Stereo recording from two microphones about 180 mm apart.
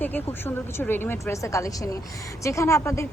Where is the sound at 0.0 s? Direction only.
10° left (ahead or behind).